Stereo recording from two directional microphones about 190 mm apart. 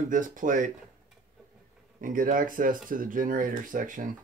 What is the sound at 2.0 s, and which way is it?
Speech, 45° right (ahead or behind).